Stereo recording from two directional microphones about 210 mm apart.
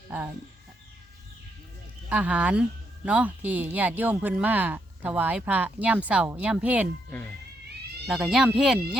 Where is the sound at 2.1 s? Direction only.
5° right (ahead or behind).